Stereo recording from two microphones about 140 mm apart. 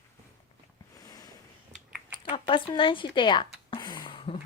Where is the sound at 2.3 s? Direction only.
40° left (ahead or behind).